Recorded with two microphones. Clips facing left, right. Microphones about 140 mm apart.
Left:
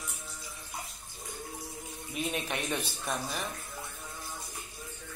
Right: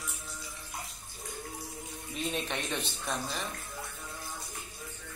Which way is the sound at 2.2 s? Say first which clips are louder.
Left 1 dB; 5° left (ahead or behind).